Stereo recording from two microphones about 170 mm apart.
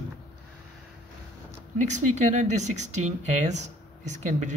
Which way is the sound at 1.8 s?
45° right (ahead or behind).